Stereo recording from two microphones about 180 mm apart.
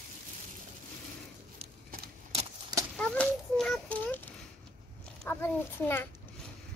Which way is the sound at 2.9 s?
5° left (ahead or behind).